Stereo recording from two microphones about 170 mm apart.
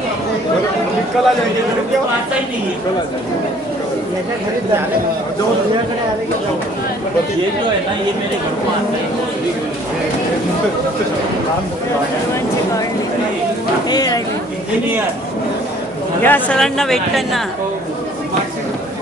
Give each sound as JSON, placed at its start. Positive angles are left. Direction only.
{"t": 1.2, "sound": "speech", "side_deg": 0}
{"t": 13.8, "sound": "speech", "side_deg": 20}
{"t": 16.2, "sound": "speech", "side_deg": 10}